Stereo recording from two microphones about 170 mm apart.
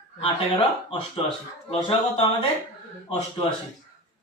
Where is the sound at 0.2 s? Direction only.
30° left (ahead or behind).